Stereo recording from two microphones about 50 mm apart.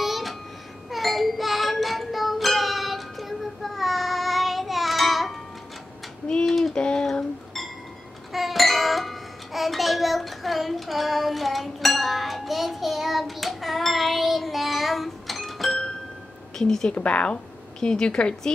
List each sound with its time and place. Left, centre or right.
0.0 s babbling: centre
0.8 s music: centre
6.4 s a sound: centre
6.7 s a sound: centre
8.3 s music: centre
16.5 s a woman's voice: centre
16.9 s a woman's voice: left